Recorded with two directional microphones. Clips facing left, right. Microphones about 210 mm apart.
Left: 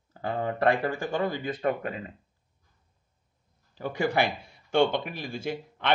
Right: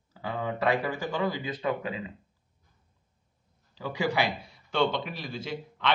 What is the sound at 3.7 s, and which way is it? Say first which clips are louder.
A man's voice: left 2 dB; 55° left (ahead or behind).